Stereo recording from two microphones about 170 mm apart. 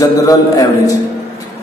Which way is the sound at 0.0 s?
20° left (ahead or behind).